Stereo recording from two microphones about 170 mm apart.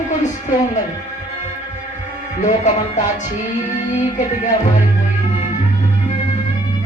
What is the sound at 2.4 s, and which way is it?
Music, 45° left (ahead or behind).